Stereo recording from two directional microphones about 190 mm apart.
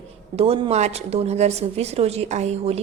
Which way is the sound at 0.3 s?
30° right (ahead or behind).